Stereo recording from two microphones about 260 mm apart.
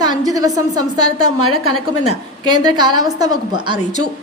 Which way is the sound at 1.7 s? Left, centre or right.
Left.